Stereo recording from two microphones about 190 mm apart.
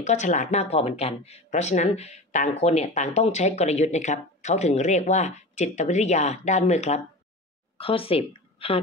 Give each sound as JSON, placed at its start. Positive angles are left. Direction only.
{"t": 0.0, "sound": "speech", "side_deg": 40}